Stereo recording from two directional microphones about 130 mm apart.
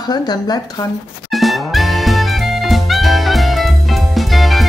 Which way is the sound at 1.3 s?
Centre (ahead or behind).